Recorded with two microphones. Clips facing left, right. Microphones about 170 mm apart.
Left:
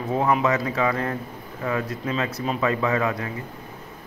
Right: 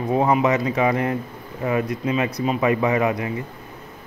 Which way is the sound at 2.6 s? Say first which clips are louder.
Right 3 dB; 15° right (ahead or behind).